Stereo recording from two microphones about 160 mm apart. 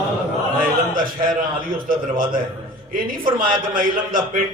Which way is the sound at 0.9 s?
60° right (ahead or behind).